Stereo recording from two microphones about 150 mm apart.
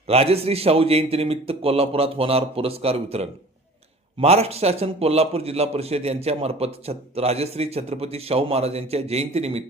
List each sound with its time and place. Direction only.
0.1 s a man's voice: 40° right (ahead or behind)